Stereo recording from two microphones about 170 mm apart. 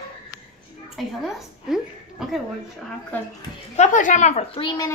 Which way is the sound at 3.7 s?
45° left (ahead or behind).